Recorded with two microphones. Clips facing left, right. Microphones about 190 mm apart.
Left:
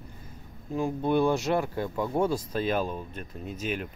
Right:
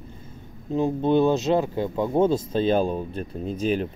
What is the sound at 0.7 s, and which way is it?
Speech, 25° right (ahead or behind).